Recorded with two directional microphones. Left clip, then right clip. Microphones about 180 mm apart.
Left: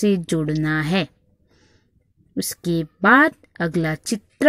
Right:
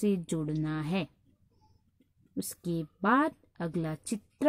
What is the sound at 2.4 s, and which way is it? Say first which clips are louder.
A woman's voice: left 13 dB; 10° left (ahead or behind).